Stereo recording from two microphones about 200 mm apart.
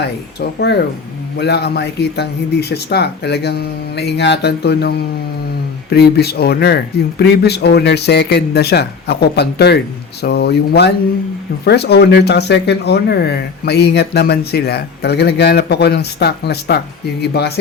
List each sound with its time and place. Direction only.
0.0 s speech: 55° left (ahead or behind)